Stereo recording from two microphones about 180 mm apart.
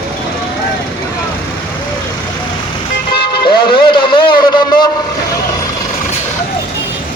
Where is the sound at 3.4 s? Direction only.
25° left (ahead or behind).